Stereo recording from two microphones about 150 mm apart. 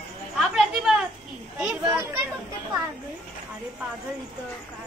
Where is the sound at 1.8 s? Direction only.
20° right (ahead or behind).